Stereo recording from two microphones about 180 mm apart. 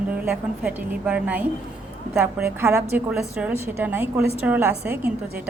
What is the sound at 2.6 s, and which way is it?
A woman's voice, 10° right (ahead or behind).